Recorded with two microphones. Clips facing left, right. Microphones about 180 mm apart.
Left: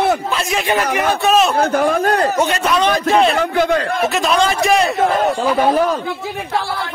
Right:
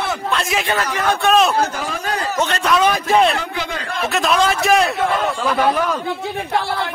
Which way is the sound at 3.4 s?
55° left (ahead or behind).